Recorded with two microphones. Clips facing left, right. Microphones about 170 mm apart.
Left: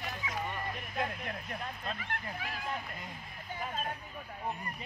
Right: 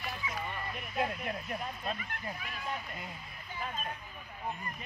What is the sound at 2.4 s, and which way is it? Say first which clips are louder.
Speech: left 4 dB; 90° left.